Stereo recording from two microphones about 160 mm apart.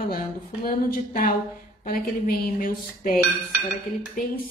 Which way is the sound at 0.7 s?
65° left (ahead or behind).